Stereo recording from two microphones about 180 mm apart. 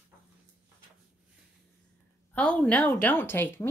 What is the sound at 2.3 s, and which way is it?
Speech, 5° left (ahead or behind).